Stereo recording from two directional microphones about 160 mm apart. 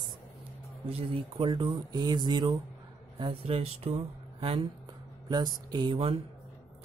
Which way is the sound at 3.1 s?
40° right (ahead or behind).